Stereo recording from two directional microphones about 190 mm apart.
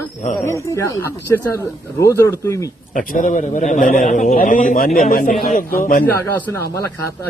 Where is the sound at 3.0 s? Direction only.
45° left (ahead or behind).